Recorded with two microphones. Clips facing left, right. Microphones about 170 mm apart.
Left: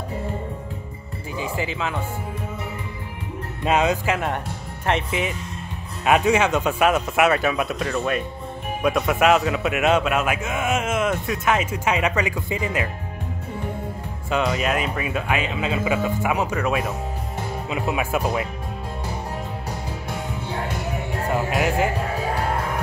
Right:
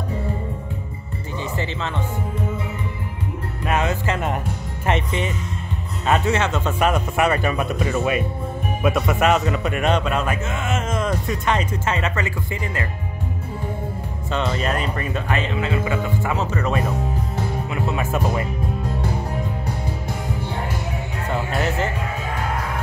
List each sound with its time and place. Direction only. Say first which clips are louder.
1.4 s speech: left 1 dB; 10° left (ahead or behind)
3.6 s a man's voice: left 2 dB; 15° left (ahead or behind)
4.8 s a man's voice: right 1 dB; centre (ahead or behind); by 12.8 s 15° left (ahead or behind)
14.3 s a man's voice: left 1 dB; 10° left (ahead or behind)
21.3 s speech: left 1 dB; 10° left (ahead or behind)